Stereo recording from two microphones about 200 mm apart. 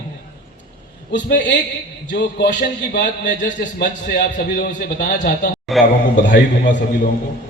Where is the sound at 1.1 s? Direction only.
60° left (ahead or behind).